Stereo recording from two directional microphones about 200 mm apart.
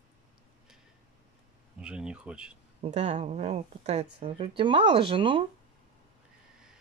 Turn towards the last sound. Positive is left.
turn(degrees=-25)  # may be behind; listen again after turning